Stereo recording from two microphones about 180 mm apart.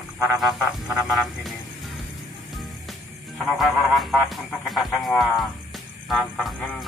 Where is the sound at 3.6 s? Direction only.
Centre (ahead or behind).